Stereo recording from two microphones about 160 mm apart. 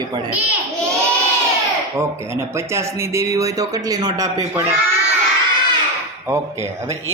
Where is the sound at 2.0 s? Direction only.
15° right (ahead or behind).